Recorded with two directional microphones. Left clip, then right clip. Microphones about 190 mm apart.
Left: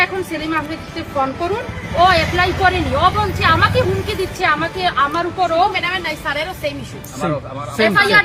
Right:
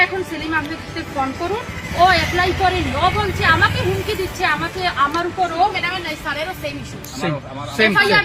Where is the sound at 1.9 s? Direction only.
30° left (ahead or behind).